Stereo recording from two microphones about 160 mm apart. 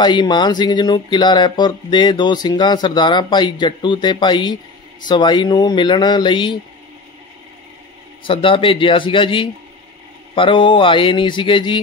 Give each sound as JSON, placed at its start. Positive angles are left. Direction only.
{"t": 0.0, "sound": "speech", "side_deg": 30}
{"t": 8.2, "sound": "speech", "side_deg": 35}